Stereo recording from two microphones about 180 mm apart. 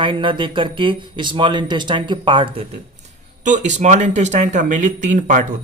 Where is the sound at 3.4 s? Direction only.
40° right (ahead or behind).